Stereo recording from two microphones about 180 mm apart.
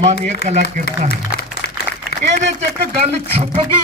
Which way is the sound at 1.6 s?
75° left (ahead or behind).